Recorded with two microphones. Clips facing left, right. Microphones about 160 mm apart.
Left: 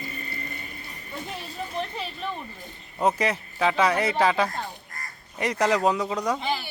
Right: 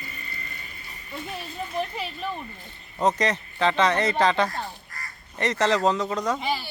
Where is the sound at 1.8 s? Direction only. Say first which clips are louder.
Right 3 dB; 5° right (ahead or behind).